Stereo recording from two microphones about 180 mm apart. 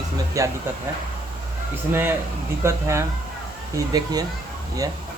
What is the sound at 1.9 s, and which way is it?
A man's voice, 10° right (ahead or behind).